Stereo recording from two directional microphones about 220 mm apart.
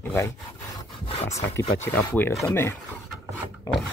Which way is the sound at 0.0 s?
10° left (ahead or behind).